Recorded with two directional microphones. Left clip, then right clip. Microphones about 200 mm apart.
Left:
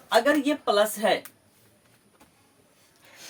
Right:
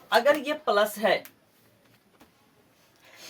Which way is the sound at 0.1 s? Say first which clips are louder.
Even; 20° left (ahead or behind).